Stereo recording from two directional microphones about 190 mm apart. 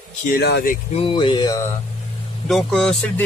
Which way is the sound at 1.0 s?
25° left (ahead or behind).